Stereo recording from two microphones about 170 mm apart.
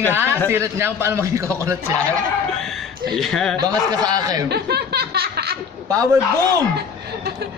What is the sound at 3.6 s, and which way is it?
Speech, 20° right (ahead or behind).